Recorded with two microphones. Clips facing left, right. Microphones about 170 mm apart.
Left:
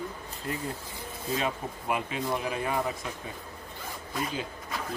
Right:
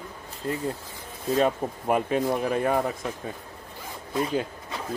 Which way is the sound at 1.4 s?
45° right (ahead or behind).